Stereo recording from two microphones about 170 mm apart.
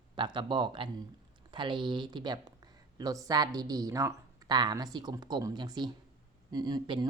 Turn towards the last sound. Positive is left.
turn(degrees=-25)  # may be behind; listen again after turning